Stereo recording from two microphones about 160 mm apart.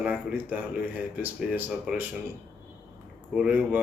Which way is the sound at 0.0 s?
5° right (ahead or behind).